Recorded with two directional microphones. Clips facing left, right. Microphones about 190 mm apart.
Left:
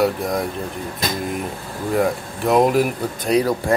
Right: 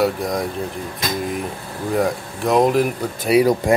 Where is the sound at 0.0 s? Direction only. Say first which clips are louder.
Even; centre (ahead or behind).